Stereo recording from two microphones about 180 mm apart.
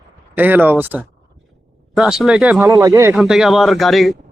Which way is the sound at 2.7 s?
20° right (ahead or behind).